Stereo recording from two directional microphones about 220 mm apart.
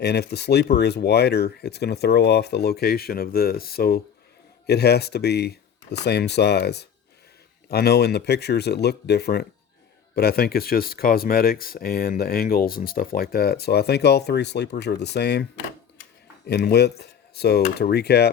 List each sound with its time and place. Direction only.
0.0 s speech: 50° left (ahead or behind)
16.5 s speech: 45° left (ahead or behind)